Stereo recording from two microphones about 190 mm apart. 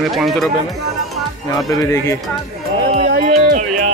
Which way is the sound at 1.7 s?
15° left (ahead or behind).